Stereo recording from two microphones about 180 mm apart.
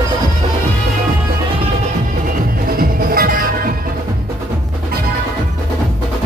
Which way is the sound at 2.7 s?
55° right (ahead or behind).